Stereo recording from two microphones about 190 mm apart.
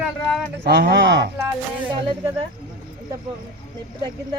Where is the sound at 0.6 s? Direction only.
60° right (ahead or behind).